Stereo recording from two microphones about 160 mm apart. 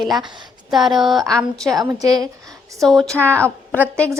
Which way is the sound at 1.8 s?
25° right (ahead or behind).